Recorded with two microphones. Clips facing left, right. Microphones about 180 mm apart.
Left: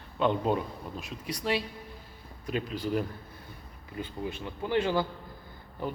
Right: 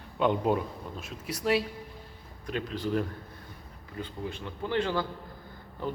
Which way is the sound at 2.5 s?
5° left (ahead or behind).